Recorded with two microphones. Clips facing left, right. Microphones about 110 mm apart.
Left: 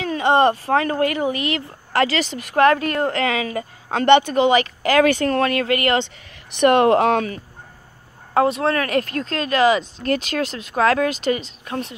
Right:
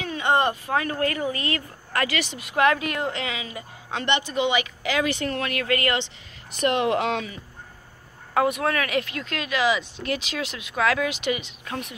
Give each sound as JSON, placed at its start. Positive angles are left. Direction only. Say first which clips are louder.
{"t": 0.0, "sound": "speech", "louder": "left 6 dB", "side_deg": 35}
{"t": 0.9, "sound": "speech", "louder": "left 5 dB", "side_deg": 20}
{"t": 1.9, "sound": "speech", "louder": "left 7 dB", "side_deg": 35}
{"t": 6.6, "sound": "speech", "louder": "left 8 dB", "side_deg": 55}
{"t": 6.9, "sound": "speech", "louder": "left 8 dB", "side_deg": 45}
{"t": 8.4, "sound": "speech", "louder": "left 4 dB", "side_deg": 30}